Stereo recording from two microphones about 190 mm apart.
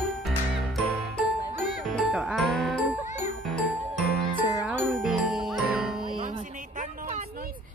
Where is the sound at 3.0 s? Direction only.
40° left (ahead or behind).